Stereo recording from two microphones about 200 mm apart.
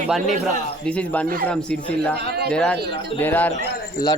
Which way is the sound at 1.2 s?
45° right (ahead or behind).